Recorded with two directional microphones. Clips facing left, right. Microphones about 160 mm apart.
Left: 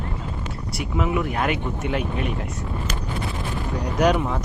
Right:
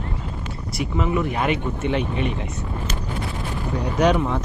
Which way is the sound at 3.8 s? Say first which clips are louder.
Right 1 dB; centre (ahead or behind).